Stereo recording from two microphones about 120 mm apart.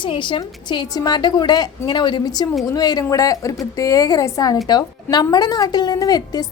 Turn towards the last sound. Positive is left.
turn(degrees=35)  # may be behind; listen again after turning